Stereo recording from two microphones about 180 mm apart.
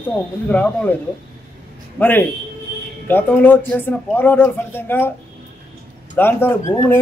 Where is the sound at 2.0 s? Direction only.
10° left (ahead or behind).